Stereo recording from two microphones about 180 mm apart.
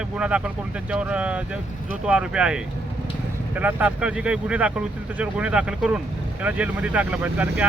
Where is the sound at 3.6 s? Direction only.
5° right (ahead or behind).